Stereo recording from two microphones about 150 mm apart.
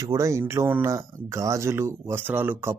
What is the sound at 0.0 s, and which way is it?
Speech, 20° right (ahead or behind).